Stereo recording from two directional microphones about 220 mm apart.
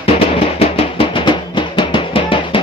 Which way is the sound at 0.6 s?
25° left (ahead or behind).